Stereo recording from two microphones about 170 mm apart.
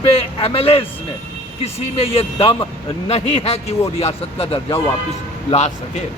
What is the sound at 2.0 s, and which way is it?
Speech, 35° left (ahead or behind).